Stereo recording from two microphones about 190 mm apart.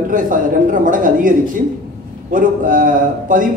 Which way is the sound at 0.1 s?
45° right (ahead or behind).